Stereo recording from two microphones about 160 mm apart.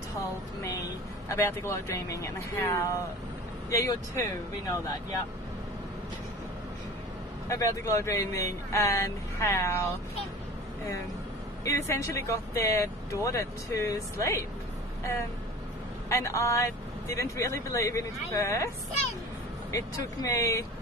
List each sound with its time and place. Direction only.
1.3 s speech: 15° left (ahead or behind)
7.4 s speech: 20° left (ahead or behind)
11.6 s speech: 20° left (ahead or behind)
16.1 s speech: 20° left (ahead or behind)
19.7 s speech: 20° left (ahead or behind)